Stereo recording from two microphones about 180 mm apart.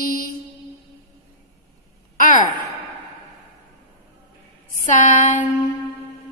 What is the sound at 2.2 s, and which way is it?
Gasp, 45° left (ahead or behind).